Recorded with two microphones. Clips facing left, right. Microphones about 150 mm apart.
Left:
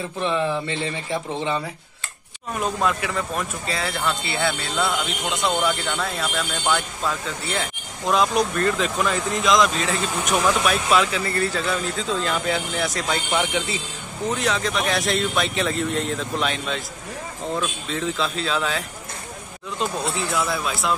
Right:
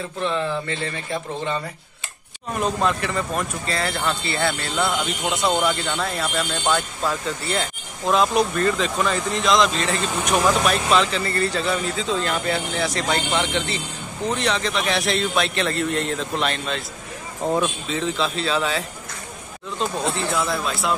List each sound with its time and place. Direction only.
0.2 s speech: 15° left (ahead or behind)
2.5 s speech: 5° left (ahead or behind)
17.8 s speech: centre (ahead or behind)